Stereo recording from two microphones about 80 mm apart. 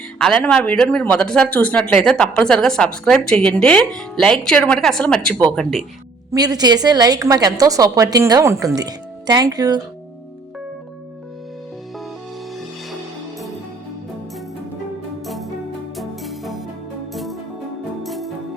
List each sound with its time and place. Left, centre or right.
0.2 s speech: centre
6.3 s a woman's voice: right
8.7 s speech: right
16.0 s music: centre